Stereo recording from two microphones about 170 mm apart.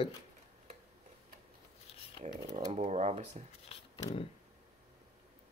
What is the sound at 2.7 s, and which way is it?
Speech, 35° right (ahead or behind).